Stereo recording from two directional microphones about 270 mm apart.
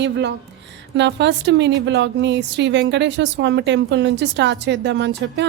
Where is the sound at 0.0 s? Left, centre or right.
Right.